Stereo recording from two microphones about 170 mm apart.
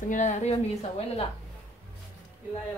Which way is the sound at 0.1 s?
45° left (ahead or behind).